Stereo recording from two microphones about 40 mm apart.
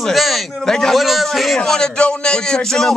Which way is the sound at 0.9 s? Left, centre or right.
Centre.